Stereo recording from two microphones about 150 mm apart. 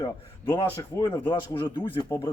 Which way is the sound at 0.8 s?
25° left (ahead or behind).